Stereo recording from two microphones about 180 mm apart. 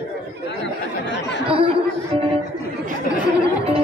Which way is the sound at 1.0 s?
75° left (ahead or behind).